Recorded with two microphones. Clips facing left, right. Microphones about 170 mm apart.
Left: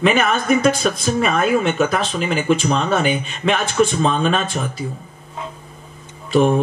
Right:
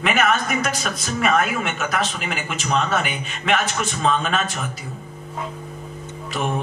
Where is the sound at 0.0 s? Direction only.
30° left (ahead or behind).